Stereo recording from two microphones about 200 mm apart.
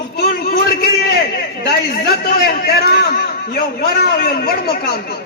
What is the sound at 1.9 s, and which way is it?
A man's voice, 50° left (ahead or behind).